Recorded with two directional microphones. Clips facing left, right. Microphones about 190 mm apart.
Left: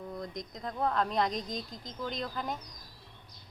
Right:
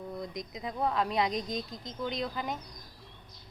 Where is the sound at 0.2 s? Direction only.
5° right (ahead or behind).